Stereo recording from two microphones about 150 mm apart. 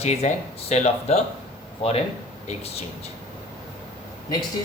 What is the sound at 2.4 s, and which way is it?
Speech, 45° left (ahead or behind).